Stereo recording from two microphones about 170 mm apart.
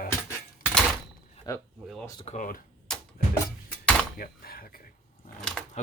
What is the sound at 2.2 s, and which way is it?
Speech, 50° left (ahead or behind).